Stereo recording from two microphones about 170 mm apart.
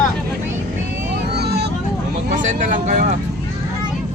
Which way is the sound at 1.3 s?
75° right (ahead or behind).